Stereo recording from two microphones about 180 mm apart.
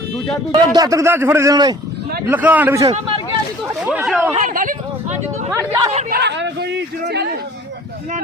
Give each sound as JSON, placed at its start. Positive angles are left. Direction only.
{"t": 0.5, "sound": "a man's voice", "side_deg": -20}
{"t": 2.2, "sound": "a man's voice", "side_deg": -10}
{"t": 3.8, "sound": "speech", "side_deg": -5}
{"t": 4.4, "sound": "a sound", "side_deg": -45}
{"t": 5.5, "sound": "a man's voice", "side_deg": -10}
{"t": 6.1, "sound": "a sound", "side_deg": -65}
{"t": 7.1, "sound": "speech", "side_deg": -70}